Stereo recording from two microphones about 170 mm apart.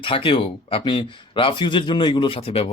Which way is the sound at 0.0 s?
30° left (ahead or behind).